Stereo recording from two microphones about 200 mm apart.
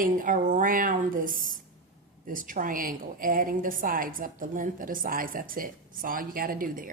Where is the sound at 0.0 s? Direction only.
40° right (ahead or behind).